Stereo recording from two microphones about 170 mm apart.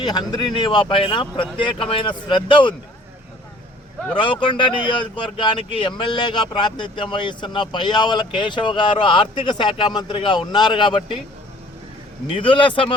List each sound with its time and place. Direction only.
0.0 s speech: 25° left (ahead or behind)
4.1 s speech: 30° left (ahead or behind)
12.3 s speech: 30° left (ahead or behind)